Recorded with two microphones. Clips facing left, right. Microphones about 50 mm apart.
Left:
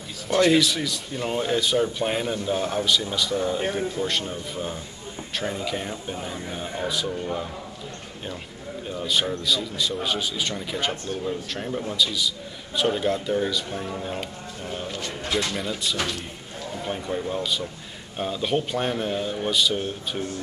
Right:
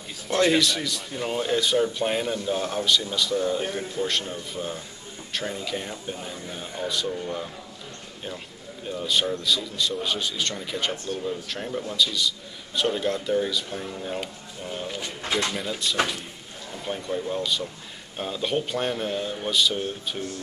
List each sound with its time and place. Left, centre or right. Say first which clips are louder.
0.3 s a man's voice: left 2 dB; centre
6.1 s speech: left 3 dB; left
6.9 s a man's voice: right 1 dB; centre
8.9 s a man's voice: even; centre
14.9 s speech: left 1 dB; centre
15.5 s a man's voice: right 1 dB; centre